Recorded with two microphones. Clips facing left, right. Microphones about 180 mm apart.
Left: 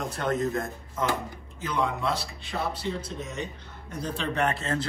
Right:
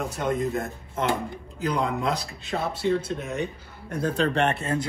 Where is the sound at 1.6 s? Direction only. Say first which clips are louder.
Right 2 dB; 35° right (ahead or behind).